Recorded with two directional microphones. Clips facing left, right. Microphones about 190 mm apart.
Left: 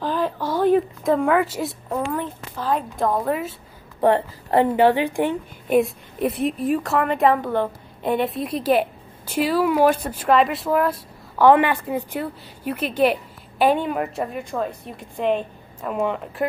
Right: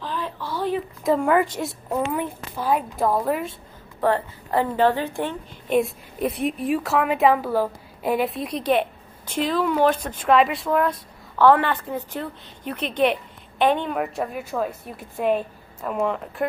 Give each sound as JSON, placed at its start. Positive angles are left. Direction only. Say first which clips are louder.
{"t": 0.0, "sound": "a sound", "louder": "left 7 dB", "side_deg": 45}
{"t": 1.0, "sound": "a woman's voice", "louder": "left 1 dB", "side_deg": 0}
{"t": 4.0, "sound": "a woman's voice", "louder": "left 4 dB", "side_deg": 20}
{"t": 4.7, "sound": "a woman's voice", "louder": "left 3 dB", "side_deg": 15}
{"t": 5.8, "sound": "a woman's voice", "louder": "left 2 dB", "side_deg": 0}